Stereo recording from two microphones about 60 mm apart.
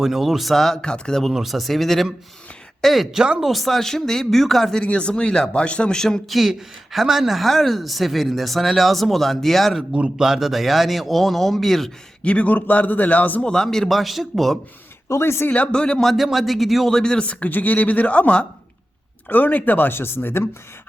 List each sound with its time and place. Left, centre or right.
0.0 s a woman's voice: centre
0.8 s speech: centre
1.3 s a woman's voice: centre
3.5 s speech: centre
6.3 s a woman's voice: centre
9.9 s a man's voice: centre
10.2 s a woman's voice: centre
12.2 s a man's voice: left
13.4 s a woman's voice: centre
15.1 s speech: left
15.4 s speech: left
16.0 s a woman's voice: centre
17.0 s speech: centre
17.2 s a man's voice: left